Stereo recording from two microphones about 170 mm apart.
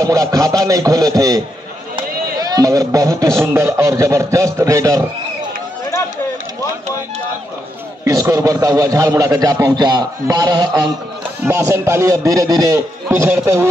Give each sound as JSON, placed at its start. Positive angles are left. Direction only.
{"t": 0.0, "sound": "a man's voice", "side_deg": -20}
{"t": 8.0, "sound": "a man's voice", "side_deg": -20}